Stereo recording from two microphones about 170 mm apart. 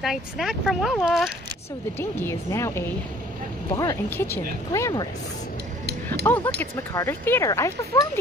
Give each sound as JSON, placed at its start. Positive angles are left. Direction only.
{"t": 0.0, "sound": "speech", "side_deg": 0}
{"t": 2.0, "sound": "speech", "side_deg": 15}
{"t": 6.2, "sound": "speech", "side_deg": 10}